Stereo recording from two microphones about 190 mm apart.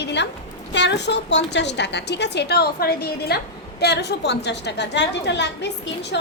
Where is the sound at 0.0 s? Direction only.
65° left (ahead or behind).